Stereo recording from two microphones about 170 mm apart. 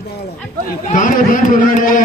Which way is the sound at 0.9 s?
50° left (ahead or behind).